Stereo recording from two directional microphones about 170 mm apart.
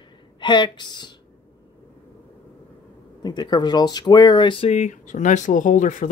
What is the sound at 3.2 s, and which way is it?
Speech, 25° left (ahead or behind).